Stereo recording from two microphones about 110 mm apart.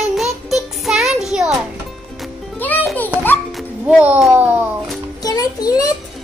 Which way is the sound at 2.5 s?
15° left (ahead or behind).